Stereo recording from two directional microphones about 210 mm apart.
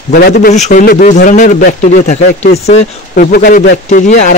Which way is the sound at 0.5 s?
35° left (ahead or behind).